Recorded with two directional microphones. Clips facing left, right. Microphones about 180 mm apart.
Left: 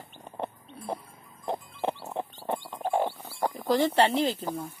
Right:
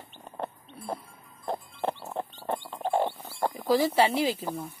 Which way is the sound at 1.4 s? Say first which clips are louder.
Even; 15° left (ahead or behind).